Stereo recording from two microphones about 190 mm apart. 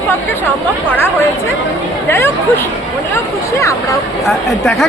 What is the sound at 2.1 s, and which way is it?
Speech, 15° left (ahead or behind).